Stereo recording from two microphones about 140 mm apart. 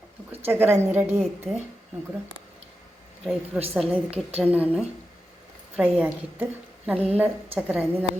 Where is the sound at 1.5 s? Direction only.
Centre (ahead or behind).